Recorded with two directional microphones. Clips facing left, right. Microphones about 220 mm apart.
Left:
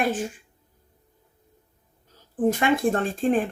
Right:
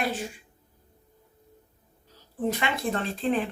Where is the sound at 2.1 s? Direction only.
50° left (ahead or behind).